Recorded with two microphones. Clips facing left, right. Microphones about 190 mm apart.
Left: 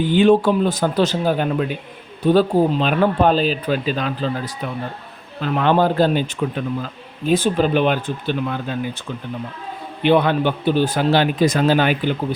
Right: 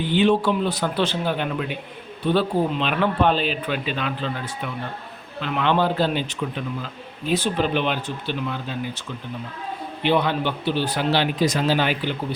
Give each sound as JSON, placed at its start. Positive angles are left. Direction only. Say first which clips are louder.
{"t": 0.1, "sound": "a man's voice", "louder": "left 4 dB", "side_deg": 45}
{"t": 10.0, "sound": "a man's voice", "louder": "left 5 dB", "side_deg": 50}